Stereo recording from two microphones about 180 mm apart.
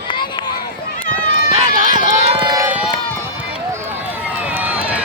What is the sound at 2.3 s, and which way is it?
Run, 25° right (ahead or behind).